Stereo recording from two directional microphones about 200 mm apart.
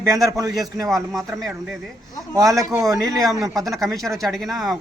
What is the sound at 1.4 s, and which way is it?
Speech, centre (ahead or behind).